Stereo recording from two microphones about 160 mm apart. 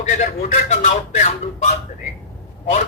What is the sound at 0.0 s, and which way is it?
A man's voice, 50° left (ahead or behind).